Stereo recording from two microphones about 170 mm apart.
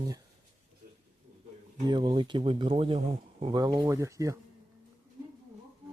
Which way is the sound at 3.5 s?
20° right (ahead or behind).